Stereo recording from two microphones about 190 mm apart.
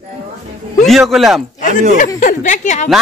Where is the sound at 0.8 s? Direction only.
Centre (ahead or behind).